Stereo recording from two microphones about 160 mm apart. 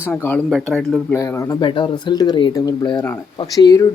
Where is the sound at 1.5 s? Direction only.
30° left (ahead or behind).